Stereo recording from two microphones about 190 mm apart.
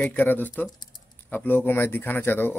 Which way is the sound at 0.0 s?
10° left (ahead or behind).